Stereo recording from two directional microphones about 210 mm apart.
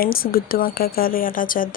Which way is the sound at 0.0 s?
45° left (ahead or behind).